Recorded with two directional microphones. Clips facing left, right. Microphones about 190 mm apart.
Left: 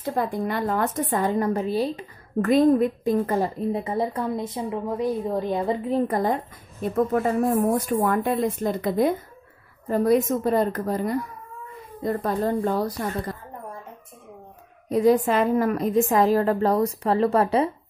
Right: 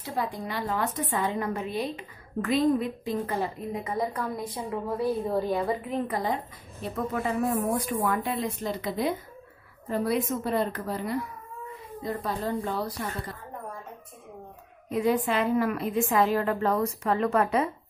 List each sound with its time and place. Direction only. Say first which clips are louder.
0.0 s speech: left 6 dB; 50° left (ahead or behind)
2.4 s a woman's voice: left 6 dB; 50° left (ahead or behind)
6.1 s speech: left 5 dB; 50° left (ahead or behind)
14.9 s a woman's voice: left 6 dB; 35° left (ahead or behind)